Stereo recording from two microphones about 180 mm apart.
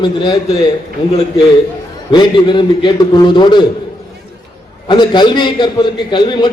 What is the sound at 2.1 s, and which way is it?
A man's voice, 25° left (ahead or behind).